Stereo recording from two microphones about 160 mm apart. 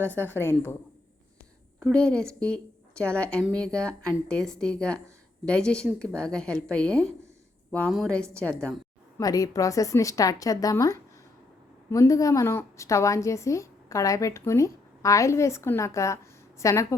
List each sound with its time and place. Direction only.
0.0 s a woman's voice: 10° left (ahead or behind)
1.8 s a woman's voice: 5° left (ahead or behind)
9.1 s a woman's voice: 20° left (ahead or behind)